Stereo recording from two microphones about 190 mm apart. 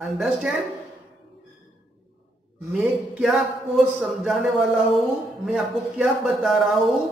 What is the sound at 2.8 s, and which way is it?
A man's voice, 5° right (ahead or behind).